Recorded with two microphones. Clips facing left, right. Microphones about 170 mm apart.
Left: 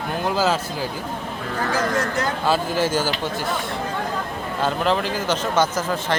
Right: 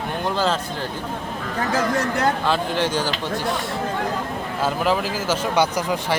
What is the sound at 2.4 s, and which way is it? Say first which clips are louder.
Speech: left 1 dB; 5° left (ahead or behind).